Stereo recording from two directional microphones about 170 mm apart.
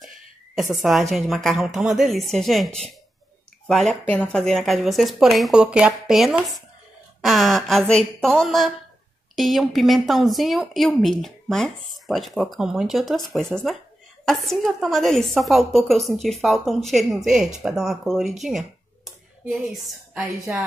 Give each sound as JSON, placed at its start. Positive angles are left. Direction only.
{"t": 0.6, "sound": "a woman's voice", "side_deg": 0}